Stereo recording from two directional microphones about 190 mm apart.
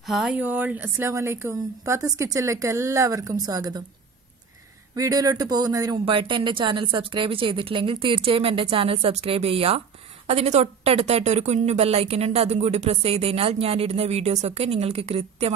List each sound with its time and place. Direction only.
0.0 s a woman's voice: centre (ahead or behind); by 3.8 s 20° right (ahead or behind)
4.9 s a woman's voice: 20° right (ahead or behind)